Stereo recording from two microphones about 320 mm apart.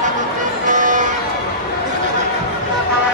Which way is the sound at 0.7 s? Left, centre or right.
Right.